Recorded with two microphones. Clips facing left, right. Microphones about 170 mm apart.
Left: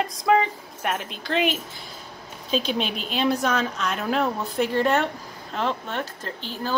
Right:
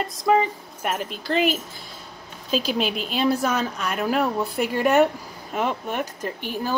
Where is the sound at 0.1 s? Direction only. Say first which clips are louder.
Right 3 dB; centre (ahead or behind).